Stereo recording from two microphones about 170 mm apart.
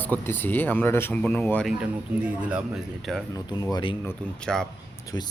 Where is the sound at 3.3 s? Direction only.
20° left (ahead or behind).